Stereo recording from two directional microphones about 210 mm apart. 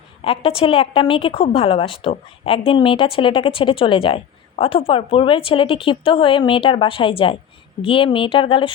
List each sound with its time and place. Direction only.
0.3 s a woman's voice: 25° left (ahead or behind)